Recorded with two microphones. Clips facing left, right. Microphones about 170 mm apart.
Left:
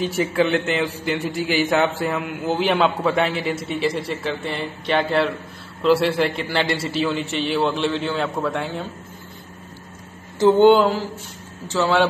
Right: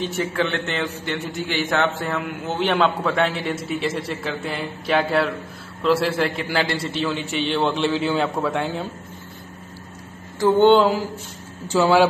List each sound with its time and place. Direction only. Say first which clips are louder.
0.0 s a man's voice: left 3 dB; 10° left (ahead or behind)
10.4 s a sound: left 3 dB; 20° left (ahead or behind)
11.6 s speech: right 3 dB; 15° right (ahead or behind)